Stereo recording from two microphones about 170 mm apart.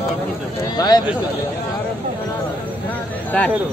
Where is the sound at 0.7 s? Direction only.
25° left (ahead or behind).